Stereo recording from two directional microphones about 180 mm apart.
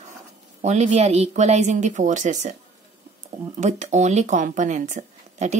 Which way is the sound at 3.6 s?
40° right (ahead or behind).